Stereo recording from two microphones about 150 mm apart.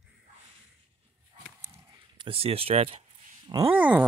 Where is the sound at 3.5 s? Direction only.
30° right (ahead or behind).